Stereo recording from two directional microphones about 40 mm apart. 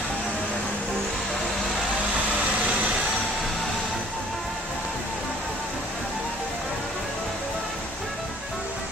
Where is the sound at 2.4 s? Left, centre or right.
Right.